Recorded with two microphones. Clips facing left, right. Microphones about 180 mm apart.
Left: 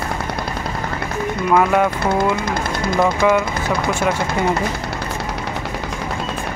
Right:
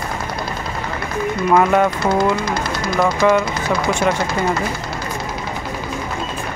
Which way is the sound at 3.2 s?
10° left (ahead or behind).